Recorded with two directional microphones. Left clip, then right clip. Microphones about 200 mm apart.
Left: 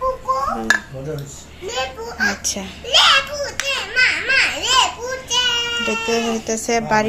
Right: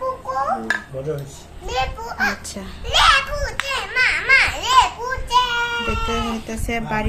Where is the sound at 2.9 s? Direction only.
25° right (ahead or behind).